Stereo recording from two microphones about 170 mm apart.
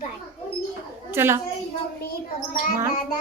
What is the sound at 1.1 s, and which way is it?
Speech, 15° right (ahead or behind).